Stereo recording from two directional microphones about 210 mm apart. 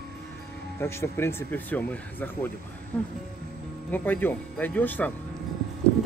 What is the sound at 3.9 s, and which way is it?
A man's voice, 10° left (ahead or behind).